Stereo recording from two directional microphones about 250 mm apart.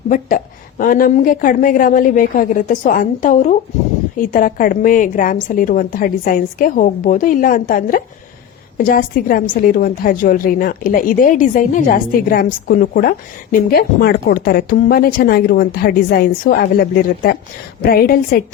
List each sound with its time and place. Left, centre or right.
0.1 s a woman's voice: left